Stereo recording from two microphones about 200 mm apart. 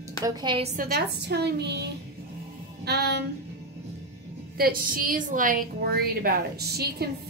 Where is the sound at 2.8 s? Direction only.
55° right (ahead or behind).